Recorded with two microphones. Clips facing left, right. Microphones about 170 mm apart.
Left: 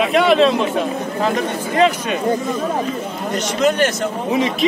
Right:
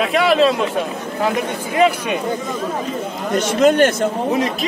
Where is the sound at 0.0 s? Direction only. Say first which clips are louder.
Left 1 dB; centre (ahead or behind).